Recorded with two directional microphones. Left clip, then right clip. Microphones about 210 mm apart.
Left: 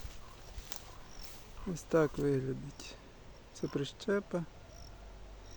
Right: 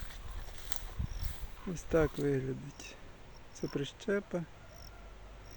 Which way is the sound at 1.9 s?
Centre (ahead or behind).